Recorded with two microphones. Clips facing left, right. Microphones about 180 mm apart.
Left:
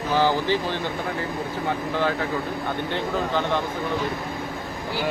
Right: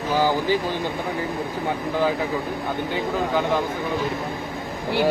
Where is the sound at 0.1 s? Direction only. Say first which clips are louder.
Right 1 dB; 10° right (ahead or behind).